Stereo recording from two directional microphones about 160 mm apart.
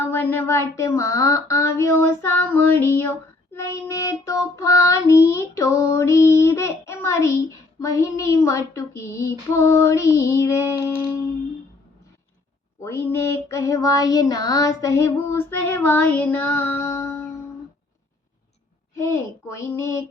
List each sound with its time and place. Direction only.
0.0 s child singing: 15° left (ahead or behind)
12.8 s child singing: 15° left (ahead or behind)
18.9 s child singing: 15° left (ahead or behind)